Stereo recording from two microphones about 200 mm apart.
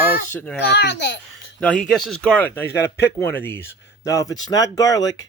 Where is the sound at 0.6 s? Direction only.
55° left (ahead or behind).